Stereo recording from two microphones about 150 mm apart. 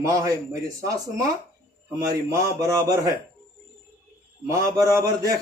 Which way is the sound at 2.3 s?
20° right (ahead or behind).